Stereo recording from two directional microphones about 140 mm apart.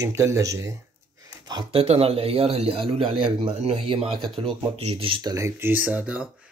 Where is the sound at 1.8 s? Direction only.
45° right (ahead or behind).